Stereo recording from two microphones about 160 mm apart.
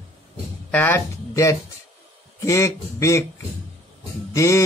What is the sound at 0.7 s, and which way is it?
Speech, 10° left (ahead or behind).